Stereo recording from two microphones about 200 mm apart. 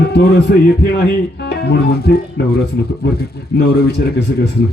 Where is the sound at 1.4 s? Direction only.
55° left (ahead or behind).